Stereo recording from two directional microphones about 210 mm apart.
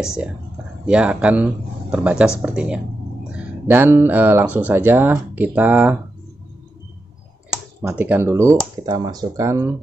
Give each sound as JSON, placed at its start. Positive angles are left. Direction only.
{"t": 0.0, "sound": "speech", "side_deg": -5}
{"t": 7.8, "sound": "speech", "side_deg": -10}